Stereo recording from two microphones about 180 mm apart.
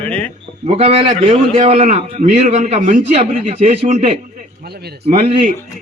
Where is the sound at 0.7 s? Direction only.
35° right (ahead or behind).